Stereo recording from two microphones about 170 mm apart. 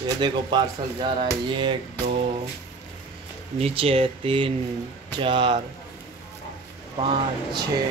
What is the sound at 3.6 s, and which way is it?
Speech, 35° right (ahead or behind).